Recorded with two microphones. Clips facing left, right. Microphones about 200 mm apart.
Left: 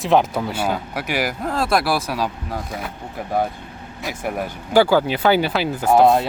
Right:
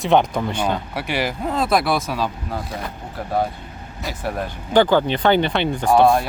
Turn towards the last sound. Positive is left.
turn(degrees=20)  # may be behind; listen again after turning